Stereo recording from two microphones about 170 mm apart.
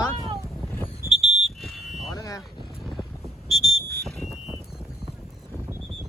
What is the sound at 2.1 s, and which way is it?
Vehicle, 20° left (ahead or behind).